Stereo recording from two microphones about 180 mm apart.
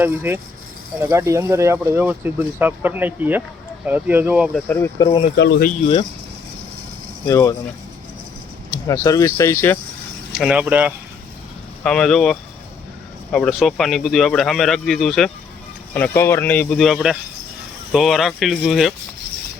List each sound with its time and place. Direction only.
0.0 s speech: 10° right (ahead or behind)
4.7 s speech: 15° left (ahead or behind)
5.0 s speech: 30° left (ahead or behind)
5.4 s speech: 75° left (ahead or behind)
5.6 s speech: 35° left (ahead or behind)
7.3 s speech: 20° left (ahead or behind)
8.9 s speech: 20° left (ahead or behind)
10.3 s speech: 5° right (ahead or behind)
11.8 s speech: 5° left (ahead or behind)
16.0 s speech: 10° left (ahead or behind)